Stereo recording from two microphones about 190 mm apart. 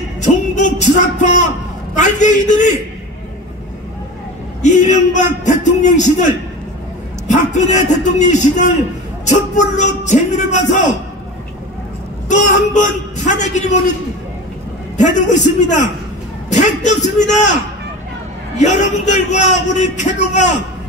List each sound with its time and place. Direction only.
0.2 s music: 40° left (ahead or behind)
2.0 s a man's voice: 40° left (ahead or behind)
4.6 s a man's voice: 40° left (ahead or behind)
12.3 s a man's voice: 40° left (ahead or behind)
15.0 s a man's voice: 40° left (ahead or behind)
18.6 s a man's voice: 40° left (ahead or behind)